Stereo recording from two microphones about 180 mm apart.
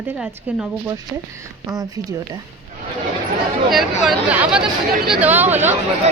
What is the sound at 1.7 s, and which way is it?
Speech, 20° right (ahead or behind).